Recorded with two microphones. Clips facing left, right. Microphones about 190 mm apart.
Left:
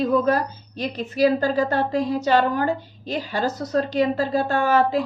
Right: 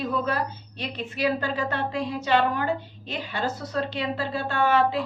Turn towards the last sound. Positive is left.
turn(degrees=40)  # may be behind; listen again after turning